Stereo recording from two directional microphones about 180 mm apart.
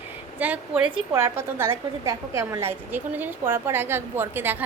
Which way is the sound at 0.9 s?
15° right (ahead or behind).